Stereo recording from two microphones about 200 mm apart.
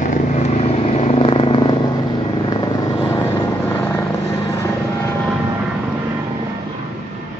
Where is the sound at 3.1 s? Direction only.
10° left (ahead or behind).